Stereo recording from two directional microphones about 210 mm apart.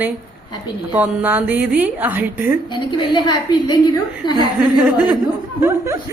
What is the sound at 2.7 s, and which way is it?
A woman's voice, 20° left (ahead or behind).